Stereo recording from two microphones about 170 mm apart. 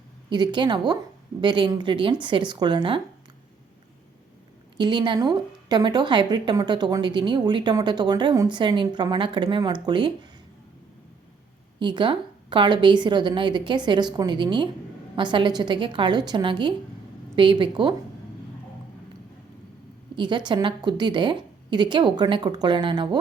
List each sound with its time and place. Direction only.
0.3 s a woman's voice: 25° right (ahead or behind)
4.8 s a woman's voice: 25° right (ahead or behind)
11.8 s a woman's voice: 25° right (ahead or behind)
20.1 s a woman's voice: 25° right (ahead or behind)